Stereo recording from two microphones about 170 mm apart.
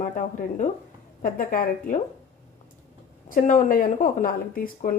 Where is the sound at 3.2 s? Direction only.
50° left (ahead or behind).